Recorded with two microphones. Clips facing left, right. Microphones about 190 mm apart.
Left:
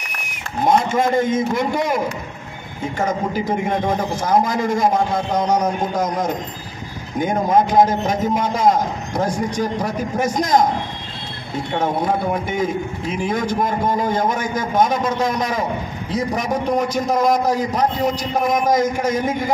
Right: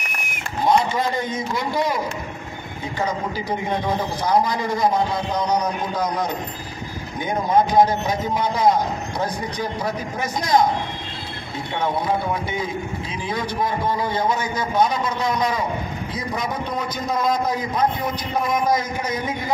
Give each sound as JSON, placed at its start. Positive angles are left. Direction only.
{"t": 0.7, "sound": "a man's voice", "side_deg": 45}
{"t": 3.4, "sound": "a man's voice", "side_deg": 45}
{"t": 11.8, "sound": "a man's voice", "side_deg": 45}
{"t": 16.6, "sound": "a man's voice", "side_deg": 90}